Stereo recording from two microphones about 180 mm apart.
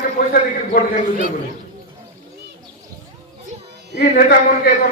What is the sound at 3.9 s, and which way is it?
Speech, 60° left (ahead or behind).